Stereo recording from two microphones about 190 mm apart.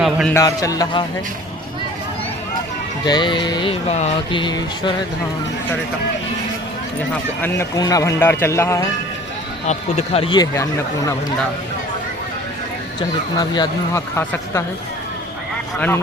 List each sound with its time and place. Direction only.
0.0 s speech: centre (ahead or behind)
0.3 s speech: 15° left (ahead or behind)
3.0 s speech: 25° left (ahead or behind)
7.4 s speech: 15° left (ahead or behind)
9.6 s speech: 35° left (ahead or behind); by 11.1 s 15° left (ahead or behind)
13.3 s speech: 20° left (ahead or behind)